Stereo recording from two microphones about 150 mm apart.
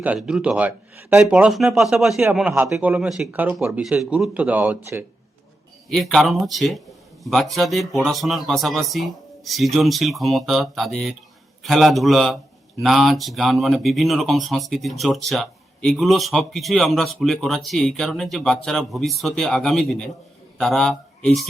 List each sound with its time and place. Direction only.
0.0 s speech: 5° right (ahead or behind)
2.5 s a man's voice: 20° right (ahead or behind)
2.7 s speech: 5° right (ahead or behind)
5.9 s a man's voice: centre (ahead or behind)